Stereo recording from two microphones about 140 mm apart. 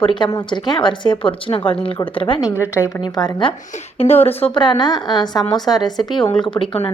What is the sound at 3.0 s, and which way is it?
Speech, 30° left (ahead or behind).